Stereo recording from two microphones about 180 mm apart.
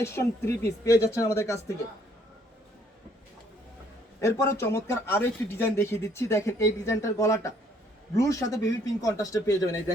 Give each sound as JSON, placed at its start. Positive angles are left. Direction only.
{"t": 0.0, "sound": "speech", "side_deg": 15}
{"t": 4.2, "sound": "speech", "side_deg": 15}